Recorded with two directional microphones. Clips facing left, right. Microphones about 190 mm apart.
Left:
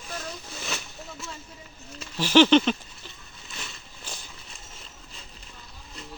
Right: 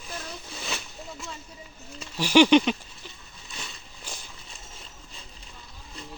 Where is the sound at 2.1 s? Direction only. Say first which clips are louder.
Even; 10° right (ahead or behind).